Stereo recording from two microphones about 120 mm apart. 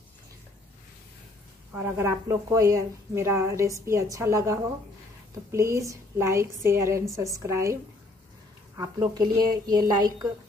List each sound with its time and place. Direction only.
1.7 s speech: 20° right (ahead or behind)
8.7 s a woman's voice: 35° right (ahead or behind)